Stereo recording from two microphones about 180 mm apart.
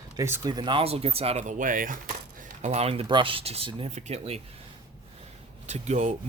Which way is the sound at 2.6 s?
35° right (ahead or behind).